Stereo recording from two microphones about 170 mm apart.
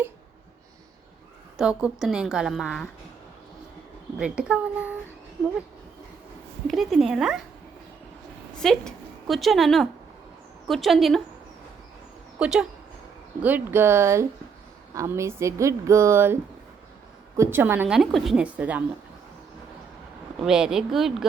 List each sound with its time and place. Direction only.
1.5 s a woman's voice: 5° right (ahead or behind)
4.2 s speech: 5° right (ahead or behind)
6.7 s a woman's voice: centre (ahead or behind)
8.5 s a woman's voice: 5° left (ahead or behind)
12.4 s speech: 5° right (ahead or behind)
20.4 s a woman's voice: 5° right (ahead or behind)